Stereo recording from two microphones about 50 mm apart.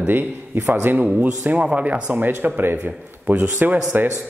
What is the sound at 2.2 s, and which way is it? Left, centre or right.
Speech, right.